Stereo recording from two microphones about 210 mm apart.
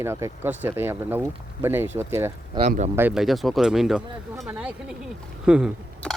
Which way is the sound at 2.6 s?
35° right (ahead or behind).